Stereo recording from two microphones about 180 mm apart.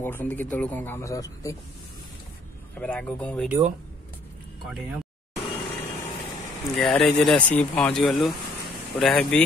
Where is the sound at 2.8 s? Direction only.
5° left (ahead or behind).